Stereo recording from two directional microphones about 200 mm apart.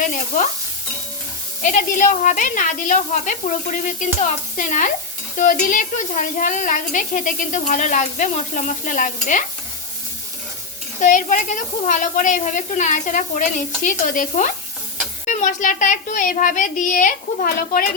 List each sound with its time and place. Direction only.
1.6 s speech: 40° left (ahead or behind)
11.0 s speech: 40° left (ahead or behind)